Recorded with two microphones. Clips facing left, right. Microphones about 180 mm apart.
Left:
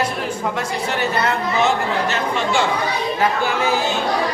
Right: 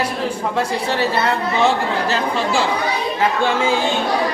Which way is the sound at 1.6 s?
30° right (ahead or behind).